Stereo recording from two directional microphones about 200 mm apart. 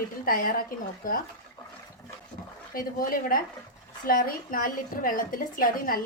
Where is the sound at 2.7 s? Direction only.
45° left (ahead or behind).